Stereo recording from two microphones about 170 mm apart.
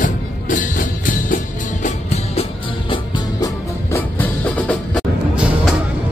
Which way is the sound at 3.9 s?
10° left (ahead or behind).